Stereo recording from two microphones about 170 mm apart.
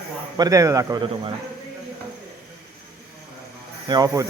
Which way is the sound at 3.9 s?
20° right (ahead or behind).